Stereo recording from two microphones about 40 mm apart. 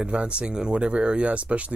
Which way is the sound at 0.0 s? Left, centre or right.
Right.